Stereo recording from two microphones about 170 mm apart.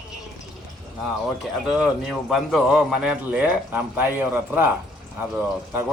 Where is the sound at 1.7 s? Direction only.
Centre (ahead or behind).